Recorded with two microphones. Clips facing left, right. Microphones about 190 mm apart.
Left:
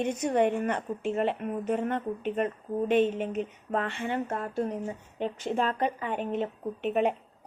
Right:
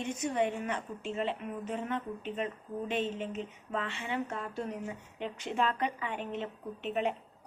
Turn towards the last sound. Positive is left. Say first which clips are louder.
# left 6 dB
turn(degrees=50)  # may be behind; listen again after turning